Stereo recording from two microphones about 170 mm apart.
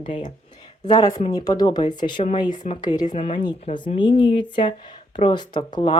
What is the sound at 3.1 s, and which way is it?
Speech, 35° left (ahead or behind).